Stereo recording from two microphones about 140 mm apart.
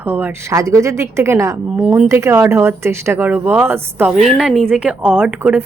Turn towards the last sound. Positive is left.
turn(degrees=-15)  # may be behind; listen again after turning